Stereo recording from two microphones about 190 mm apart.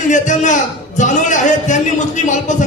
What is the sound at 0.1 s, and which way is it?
Speech, 40° left (ahead or behind).